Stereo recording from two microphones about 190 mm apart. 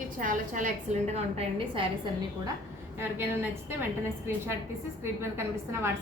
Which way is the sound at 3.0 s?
10° right (ahead or behind).